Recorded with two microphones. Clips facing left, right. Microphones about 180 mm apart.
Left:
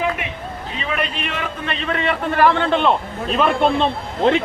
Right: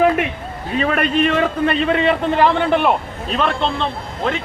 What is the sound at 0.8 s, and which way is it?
A man's voice, 50° right (ahead or behind).